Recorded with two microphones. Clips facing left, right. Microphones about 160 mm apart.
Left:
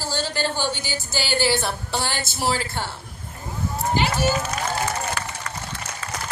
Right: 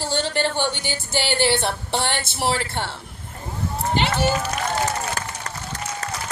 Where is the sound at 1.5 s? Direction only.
25° right (ahead or behind).